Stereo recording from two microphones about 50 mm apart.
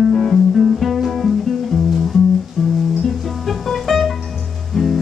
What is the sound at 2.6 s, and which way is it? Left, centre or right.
Music, centre.